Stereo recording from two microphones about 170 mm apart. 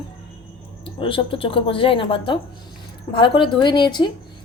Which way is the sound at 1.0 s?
30° left (ahead or behind).